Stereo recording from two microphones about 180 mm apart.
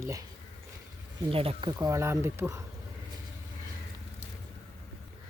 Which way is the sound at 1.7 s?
20° right (ahead or behind).